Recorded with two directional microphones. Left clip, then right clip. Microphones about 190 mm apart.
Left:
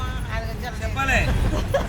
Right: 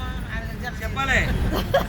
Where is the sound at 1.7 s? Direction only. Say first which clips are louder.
Right 3 dB; 15° right (ahead or behind).